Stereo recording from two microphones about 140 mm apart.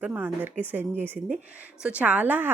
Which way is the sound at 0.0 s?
15° right (ahead or behind).